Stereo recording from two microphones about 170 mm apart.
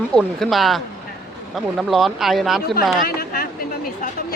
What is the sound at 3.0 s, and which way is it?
Speech, 60° left (ahead or behind).